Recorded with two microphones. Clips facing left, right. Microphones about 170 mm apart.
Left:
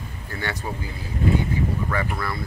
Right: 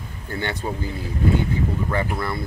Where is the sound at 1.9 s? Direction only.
25° right (ahead or behind).